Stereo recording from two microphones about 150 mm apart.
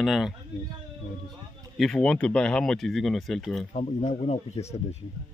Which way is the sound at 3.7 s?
50° left (ahead or behind).